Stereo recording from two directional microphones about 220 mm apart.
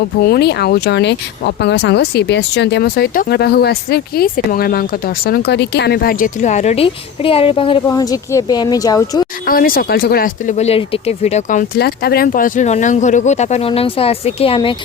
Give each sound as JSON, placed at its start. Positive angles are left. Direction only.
{"t": 0.2, "sound": "speech", "side_deg": 45}
{"t": 9.5, "sound": "speech", "side_deg": 40}
{"t": 11.7, "sound": "speech", "side_deg": 45}